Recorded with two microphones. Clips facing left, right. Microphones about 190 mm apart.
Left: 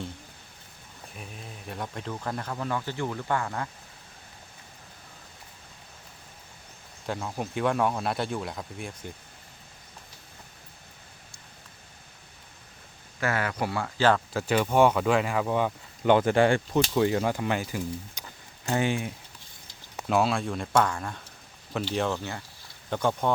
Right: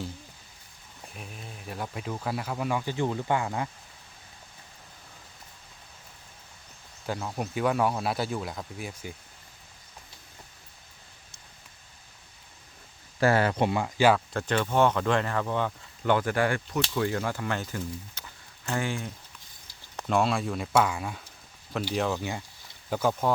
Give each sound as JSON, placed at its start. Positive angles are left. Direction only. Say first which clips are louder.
{"t": 1.1, "sound": "speech", "louder": "left 1 dB", "side_deg": 0}
{"t": 7.1, "sound": "speech", "louder": "even", "side_deg": 0}
{"t": 13.1, "sound": "speech", "louder": "right 5 dB", "side_deg": -30}
{"t": 14.3, "sound": "speech", "louder": "left 2 dB", "side_deg": 10}
{"t": 20.0, "sound": "speech", "louder": "left 1 dB", "side_deg": 5}
{"t": 22.2, "sound": "speech", "louder": "right 2 dB", "side_deg": -15}